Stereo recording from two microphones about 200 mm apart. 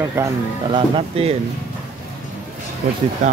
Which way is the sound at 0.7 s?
25° right (ahead or behind).